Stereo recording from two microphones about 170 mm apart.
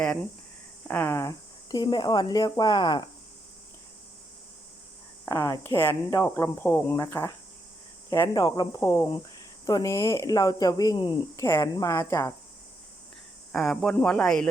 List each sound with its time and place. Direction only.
0.9 s speech: 10° left (ahead or behind); by 3.1 s 25° left (ahead or behind)
5.2 s speech: 20° left (ahead or behind)
8.8 s speech: 15° left (ahead or behind)
13.5 s speech: 5° left (ahead or behind)